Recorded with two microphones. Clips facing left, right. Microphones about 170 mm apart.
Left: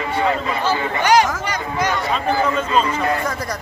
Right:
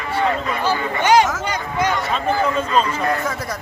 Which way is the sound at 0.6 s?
25° right (ahead or behind).